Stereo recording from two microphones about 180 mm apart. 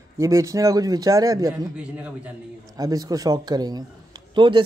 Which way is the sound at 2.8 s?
20° right (ahead or behind).